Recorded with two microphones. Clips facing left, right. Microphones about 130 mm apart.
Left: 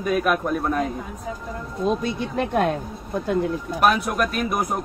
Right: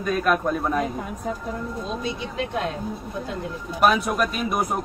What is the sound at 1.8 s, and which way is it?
Speech, 50° left (ahead or behind).